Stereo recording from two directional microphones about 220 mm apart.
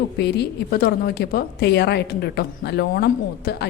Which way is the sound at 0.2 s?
50° left (ahead or behind).